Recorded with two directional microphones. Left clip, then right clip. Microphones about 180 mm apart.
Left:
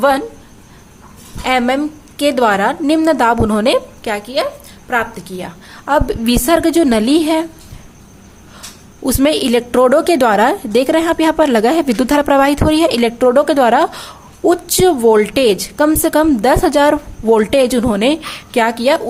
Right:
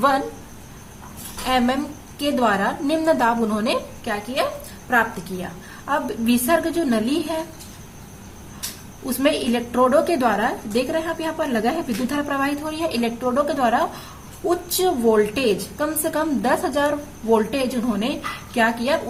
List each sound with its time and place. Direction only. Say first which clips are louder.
1.5 s a woman's voice: left 7 dB; 50° left (ahead or behind)
9.0 s a woman's voice: left 7 dB; 55° left (ahead or behind)